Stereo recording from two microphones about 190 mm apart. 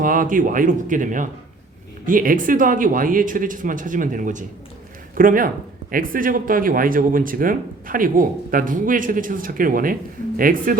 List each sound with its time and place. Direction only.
0.0 s speech: 45° right (ahead or behind)